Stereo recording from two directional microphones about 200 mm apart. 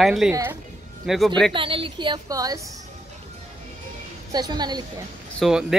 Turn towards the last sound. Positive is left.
turn(degrees=0)  # may be behind; listen again after turning